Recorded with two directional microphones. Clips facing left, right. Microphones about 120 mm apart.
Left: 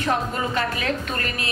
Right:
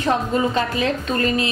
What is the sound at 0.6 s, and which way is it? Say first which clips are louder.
Speech: right 4 dB; 25° right (ahead or behind).